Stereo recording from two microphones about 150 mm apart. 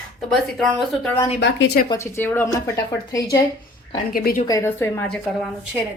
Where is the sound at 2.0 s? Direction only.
15° left (ahead or behind).